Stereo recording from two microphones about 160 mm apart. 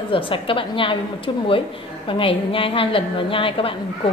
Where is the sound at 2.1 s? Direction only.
35° left (ahead or behind).